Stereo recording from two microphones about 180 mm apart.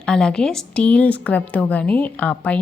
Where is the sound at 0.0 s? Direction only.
5° left (ahead or behind).